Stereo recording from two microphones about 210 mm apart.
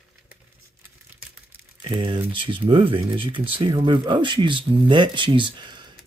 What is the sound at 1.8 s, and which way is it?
Speech, 25° right (ahead or behind).